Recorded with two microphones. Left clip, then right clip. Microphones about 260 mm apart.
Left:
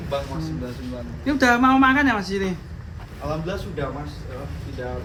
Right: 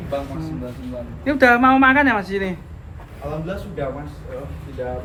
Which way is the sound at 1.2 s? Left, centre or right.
Centre.